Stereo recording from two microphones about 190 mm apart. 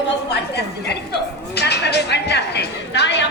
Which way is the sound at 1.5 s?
60° left (ahead or behind).